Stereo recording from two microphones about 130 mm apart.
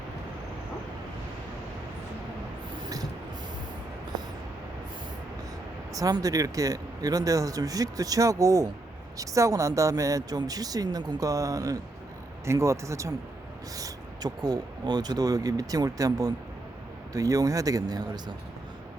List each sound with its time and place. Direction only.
5.9 s speech: 30° right (ahead or behind)